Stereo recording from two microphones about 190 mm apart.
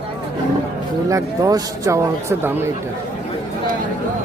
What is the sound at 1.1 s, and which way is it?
Speech, 15° right (ahead or behind).